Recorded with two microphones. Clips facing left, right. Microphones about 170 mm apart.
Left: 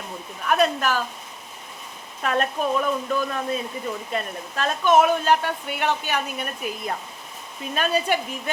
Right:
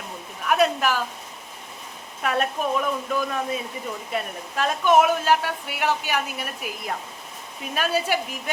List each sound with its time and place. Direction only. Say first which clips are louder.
0.4 s speech: even; 10° right (ahead or behind)
2.2 s speech: left 1 dB; 5° right (ahead or behind)